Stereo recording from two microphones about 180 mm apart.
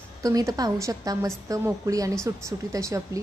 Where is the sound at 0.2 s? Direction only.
20° right (ahead or behind).